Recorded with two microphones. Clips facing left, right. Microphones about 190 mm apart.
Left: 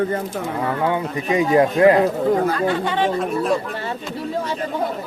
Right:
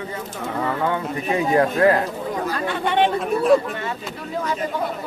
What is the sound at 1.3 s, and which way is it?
Speech, 15° left (ahead or behind).